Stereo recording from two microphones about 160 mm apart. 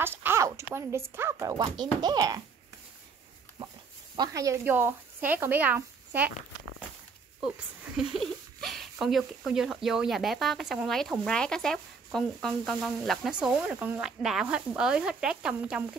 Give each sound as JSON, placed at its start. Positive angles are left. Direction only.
{"t": 0.0, "sound": "speech", "side_deg": -15}
{"t": 4.2, "sound": "speech", "side_deg": -20}
{"t": 7.3, "sound": "speech", "side_deg": -10}